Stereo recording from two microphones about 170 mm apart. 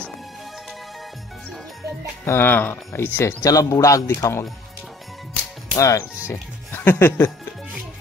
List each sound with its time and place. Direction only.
2.2 s speech: 15° left (ahead or behind)
5.8 s speech: 20° left (ahead or behind)